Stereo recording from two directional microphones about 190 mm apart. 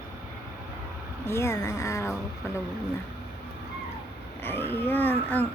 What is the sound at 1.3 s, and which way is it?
Speech, 15° left (ahead or behind).